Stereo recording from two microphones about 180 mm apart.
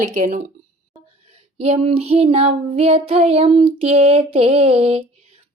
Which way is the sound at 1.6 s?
35° right (ahead or behind).